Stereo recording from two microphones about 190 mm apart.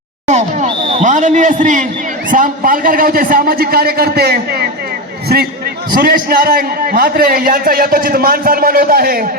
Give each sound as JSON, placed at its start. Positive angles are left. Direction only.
{"t": 0.3, "sound": "a man's voice", "side_deg": -40}
{"t": 5.9, "sound": "a man's voice", "side_deg": -50}